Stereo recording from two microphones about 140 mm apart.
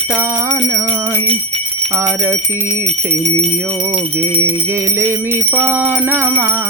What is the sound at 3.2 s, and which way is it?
Bell, 45° right (ahead or behind).